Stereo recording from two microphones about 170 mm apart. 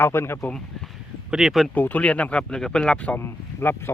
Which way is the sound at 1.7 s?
10° left (ahead or behind).